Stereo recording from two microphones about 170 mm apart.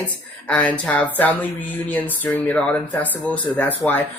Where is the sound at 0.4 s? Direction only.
10° left (ahead or behind).